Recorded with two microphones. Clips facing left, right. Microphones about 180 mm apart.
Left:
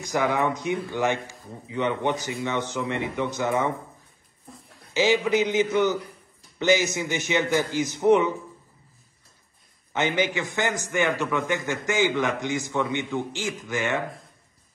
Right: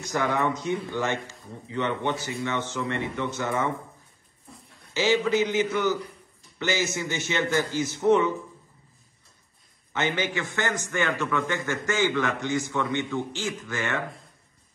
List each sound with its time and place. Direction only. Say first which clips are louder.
0.0 s a man's voice: left 2 dB; 15° left (ahead or behind)
4.9 s a man's voice: left 1 dB; 15° left (ahead or behind)
9.9 s a man's voice: left 3 dB; 15° left (ahead or behind)